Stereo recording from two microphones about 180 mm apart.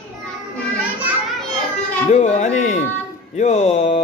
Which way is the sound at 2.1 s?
40° left (ahead or behind).